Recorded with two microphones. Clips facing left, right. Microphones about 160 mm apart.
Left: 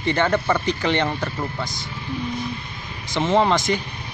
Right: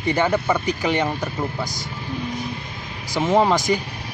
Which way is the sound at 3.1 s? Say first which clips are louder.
Right 1 dB; 10° right (ahead or behind).